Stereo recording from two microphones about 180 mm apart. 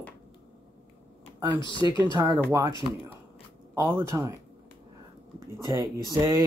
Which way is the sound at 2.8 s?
20° right (ahead or behind).